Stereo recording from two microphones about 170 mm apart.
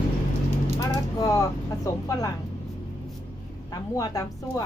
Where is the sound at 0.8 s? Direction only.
20° left (ahead or behind).